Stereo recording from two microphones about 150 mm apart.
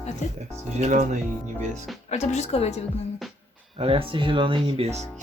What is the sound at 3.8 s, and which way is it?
Speech, 40° right (ahead or behind).